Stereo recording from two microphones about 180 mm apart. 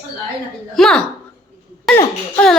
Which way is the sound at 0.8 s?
5° left (ahead or behind).